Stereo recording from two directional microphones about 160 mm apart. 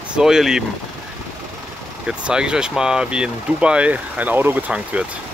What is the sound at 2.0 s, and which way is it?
Speech, 5° right (ahead or behind).